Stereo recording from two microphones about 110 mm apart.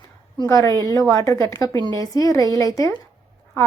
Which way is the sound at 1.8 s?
40° right (ahead or behind).